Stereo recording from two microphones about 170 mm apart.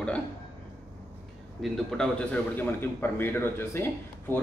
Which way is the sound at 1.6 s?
5° left (ahead or behind).